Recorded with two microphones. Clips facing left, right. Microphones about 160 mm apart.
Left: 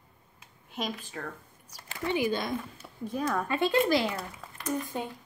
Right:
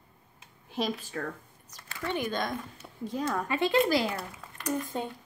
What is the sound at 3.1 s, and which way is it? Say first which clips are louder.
Speech: left 1 dB; 25° right (ahead or behind).